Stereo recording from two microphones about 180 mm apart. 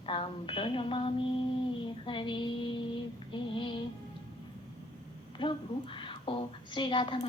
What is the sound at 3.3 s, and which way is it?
Female singing, 25° left (ahead or behind).